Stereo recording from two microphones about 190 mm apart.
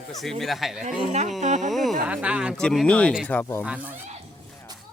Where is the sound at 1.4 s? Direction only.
40° right (ahead or behind).